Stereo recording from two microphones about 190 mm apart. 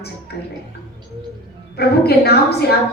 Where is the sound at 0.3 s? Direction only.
55° left (ahead or behind).